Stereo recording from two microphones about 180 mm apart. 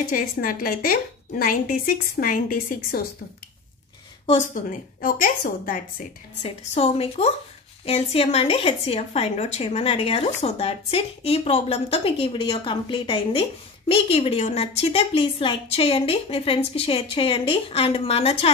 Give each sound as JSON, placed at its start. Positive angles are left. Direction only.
{"t": 0.1, "sound": "a woman's voice", "side_deg": 50}
{"t": 4.3, "sound": "a woman's voice", "side_deg": 45}
{"t": 6.4, "sound": "a woman's voice", "side_deg": 35}